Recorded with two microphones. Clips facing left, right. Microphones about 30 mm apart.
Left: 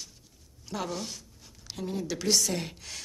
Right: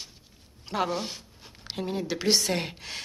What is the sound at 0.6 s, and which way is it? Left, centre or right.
A woman's voice, right.